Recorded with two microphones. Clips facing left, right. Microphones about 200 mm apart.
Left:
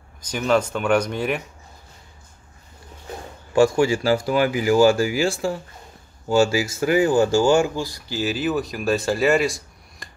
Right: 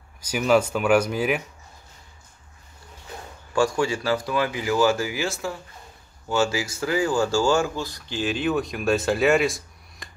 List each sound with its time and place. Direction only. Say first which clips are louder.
0.2 s speech: right 1 dB; 5° right (ahead or behind)
3.5 s speech: left 5 dB; 25° left (ahead or behind)
4.9 s speech: left 6 dB; 20° right (ahead or behind)
5.2 s speech: left 6 dB; 30° left (ahead or behind); by 10.0 s centre (ahead or behind)